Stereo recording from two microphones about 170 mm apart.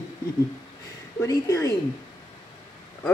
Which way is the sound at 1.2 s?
20° left (ahead or behind).